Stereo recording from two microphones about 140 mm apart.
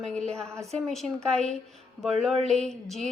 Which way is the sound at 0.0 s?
5° left (ahead or behind).